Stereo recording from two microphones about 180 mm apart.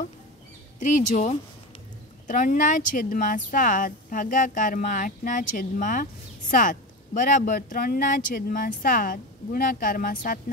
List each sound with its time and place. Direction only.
0.7 s speech: 45° left (ahead or behind)